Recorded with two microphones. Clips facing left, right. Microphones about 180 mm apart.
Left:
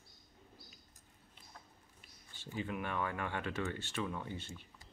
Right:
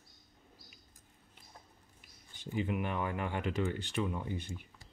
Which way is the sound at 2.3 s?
15° right (ahead or behind).